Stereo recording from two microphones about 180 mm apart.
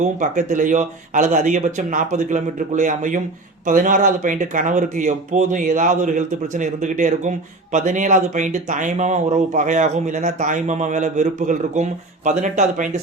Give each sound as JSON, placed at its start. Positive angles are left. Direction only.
{"t": 0.0, "sound": "speech", "side_deg": -45}